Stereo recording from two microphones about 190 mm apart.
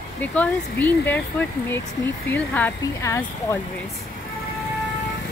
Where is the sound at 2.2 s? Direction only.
10° left (ahead or behind).